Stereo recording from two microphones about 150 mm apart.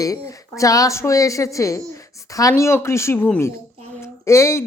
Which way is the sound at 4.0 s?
20° left (ahead or behind).